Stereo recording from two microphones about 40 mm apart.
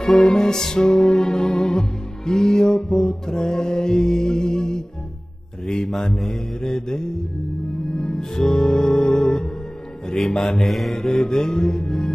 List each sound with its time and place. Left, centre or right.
0.0 s music: centre
5.9 s music: centre
10.6 s mantra: centre
11.0 s music: centre